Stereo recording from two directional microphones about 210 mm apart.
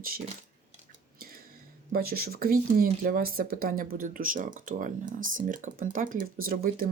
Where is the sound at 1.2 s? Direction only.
45° right (ahead or behind).